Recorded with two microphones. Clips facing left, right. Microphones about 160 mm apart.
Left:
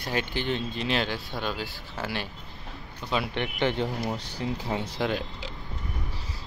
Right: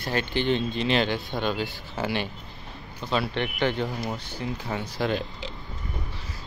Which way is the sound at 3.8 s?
Centre (ahead or behind).